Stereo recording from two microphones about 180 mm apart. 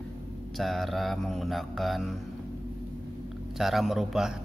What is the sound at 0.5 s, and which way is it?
Speech, centre (ahead or behind).